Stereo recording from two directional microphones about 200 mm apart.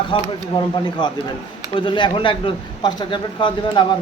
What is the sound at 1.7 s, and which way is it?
Speech, 25° left (ahead or behind).